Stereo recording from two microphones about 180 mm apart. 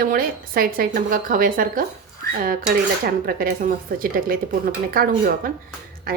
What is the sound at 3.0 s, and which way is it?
A woman's voice, 55° right (ahead or behind).